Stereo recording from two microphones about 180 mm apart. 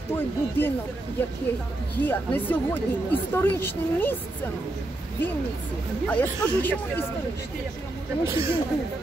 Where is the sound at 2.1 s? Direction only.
10° left (ahead or behind).